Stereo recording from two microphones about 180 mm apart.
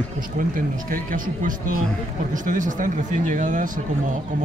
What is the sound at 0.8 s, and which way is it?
Speech, 50° right (ahead or behind).